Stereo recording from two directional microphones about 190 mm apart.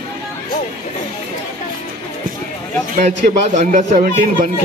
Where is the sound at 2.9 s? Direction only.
40° right (ahead or behind).